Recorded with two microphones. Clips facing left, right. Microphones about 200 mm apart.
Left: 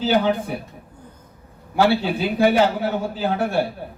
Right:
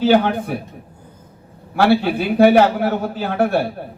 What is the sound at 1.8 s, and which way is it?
A man's voice, 60° right (ahead or behind).